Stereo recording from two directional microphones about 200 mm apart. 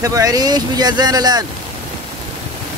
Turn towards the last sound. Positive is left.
turn(degrees=-20)  # may be behind; listen again after turning